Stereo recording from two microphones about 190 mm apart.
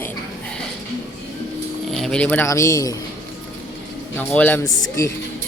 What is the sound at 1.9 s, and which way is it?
Speech, centre (ahead or behind).